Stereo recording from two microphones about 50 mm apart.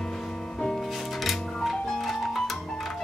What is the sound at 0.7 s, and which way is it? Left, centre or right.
Music, centre.